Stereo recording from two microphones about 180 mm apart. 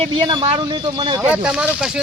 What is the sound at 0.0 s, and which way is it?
Speech, 30° right (ahead or behind).